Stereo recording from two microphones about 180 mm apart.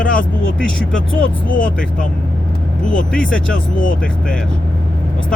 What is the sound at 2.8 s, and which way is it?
Speech, 5° left (ahead or behind).